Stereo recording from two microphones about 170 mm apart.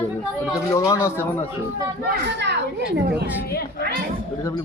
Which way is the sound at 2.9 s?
70° right (ahead or behind).